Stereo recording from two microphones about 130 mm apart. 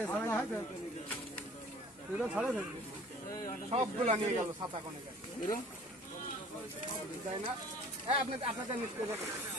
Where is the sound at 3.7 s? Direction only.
50° right (ahead or behind).